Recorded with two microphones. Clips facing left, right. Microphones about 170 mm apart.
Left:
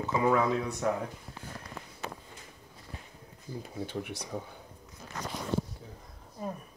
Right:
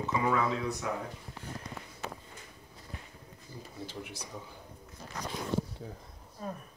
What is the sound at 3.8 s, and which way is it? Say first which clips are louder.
Speech: left 5 dB; 55° left (ahead or behind).